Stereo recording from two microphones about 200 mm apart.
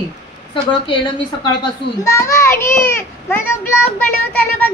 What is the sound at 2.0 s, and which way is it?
A child's voice, 15° left (ahead or behind).